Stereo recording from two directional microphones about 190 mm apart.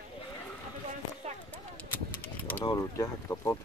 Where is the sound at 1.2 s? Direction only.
35° right (ahead or behind).